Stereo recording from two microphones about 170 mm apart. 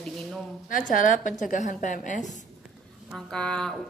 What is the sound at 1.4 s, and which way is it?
A woman's voice, 50° left (ahead or behind).